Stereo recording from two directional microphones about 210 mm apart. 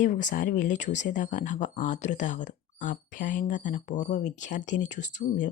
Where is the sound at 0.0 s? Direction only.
40° left (ahead or behind).